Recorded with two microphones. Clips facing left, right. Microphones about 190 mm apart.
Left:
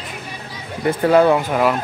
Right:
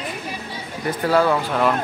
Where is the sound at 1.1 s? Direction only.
20° left (ahead or behind).